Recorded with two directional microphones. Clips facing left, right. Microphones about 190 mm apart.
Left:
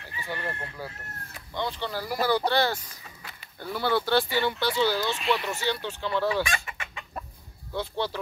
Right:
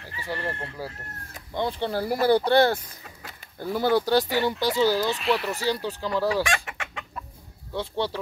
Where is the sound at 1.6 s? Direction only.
50° right (ahead or behind).